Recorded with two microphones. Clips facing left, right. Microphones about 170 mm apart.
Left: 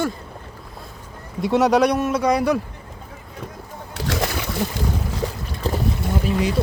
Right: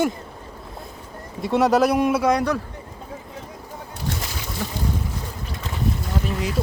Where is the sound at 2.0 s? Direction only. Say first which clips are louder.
Right 2 dB; 15° right (ahead or behind).